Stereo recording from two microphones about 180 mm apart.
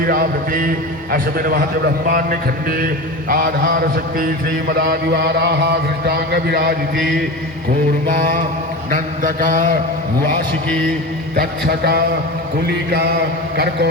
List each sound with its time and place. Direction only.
0.0 s mantra: 55° right (ahead or behind)
6.1 s a sound: 65° right (ahead or behind)
6.9 s chant: centre (ahead or behind)
8.0 s mantra: 50° right (ahead or behind)
10.7 s a man's voice: 5° left (ahead or behind)
11.3 s a sound: 60° right (ahead or behind)